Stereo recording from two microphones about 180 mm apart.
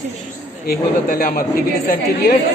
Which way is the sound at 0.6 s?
55° left (ahead or behind).